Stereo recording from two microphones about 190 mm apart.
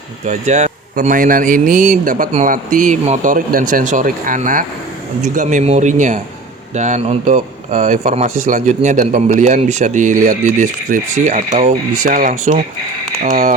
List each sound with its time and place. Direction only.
0.3 s a man's voice: 40° right (ahead or behind)